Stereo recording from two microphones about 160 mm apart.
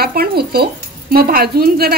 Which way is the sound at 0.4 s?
80° right.